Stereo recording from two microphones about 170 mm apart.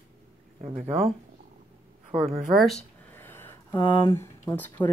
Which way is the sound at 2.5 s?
Centre (ahead or behind).